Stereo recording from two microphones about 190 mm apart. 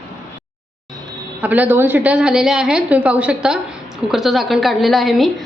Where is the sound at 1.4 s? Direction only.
10° right (ahead or behind).